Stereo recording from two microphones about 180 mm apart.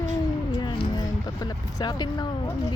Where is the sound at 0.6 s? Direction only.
25° left (ahead or behind).